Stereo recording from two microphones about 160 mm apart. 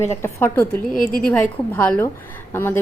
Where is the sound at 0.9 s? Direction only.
60° left (ahead or behind).